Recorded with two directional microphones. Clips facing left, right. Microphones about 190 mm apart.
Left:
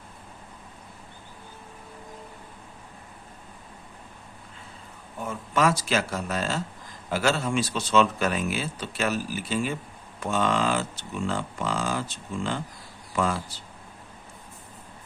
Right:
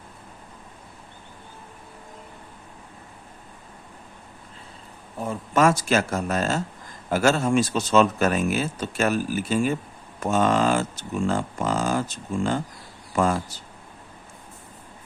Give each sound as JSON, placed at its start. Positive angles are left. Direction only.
{"t": 5.2, "sound": "speech", "side_deg": -40}